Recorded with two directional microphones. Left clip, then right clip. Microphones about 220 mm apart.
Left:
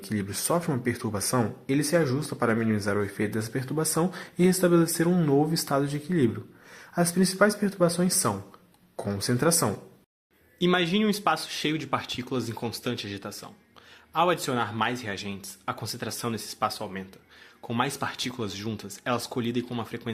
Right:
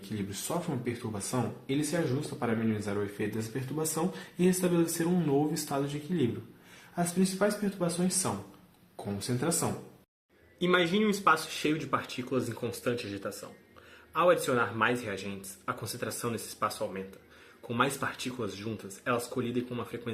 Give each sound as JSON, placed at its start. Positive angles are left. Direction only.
{"t": 0.3, "sound": "speech", "side_deg": 40}
{"t": 14.2, "sound": "speech", "side_deg": 35}